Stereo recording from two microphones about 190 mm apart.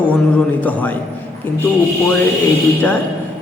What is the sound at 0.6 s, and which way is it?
Speech, 10° left (ahead or behind).